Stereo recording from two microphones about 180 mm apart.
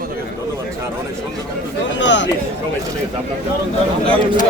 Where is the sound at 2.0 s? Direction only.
85° left.